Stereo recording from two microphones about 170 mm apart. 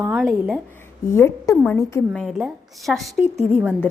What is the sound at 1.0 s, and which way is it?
Speech, 15° left (ahead or behind).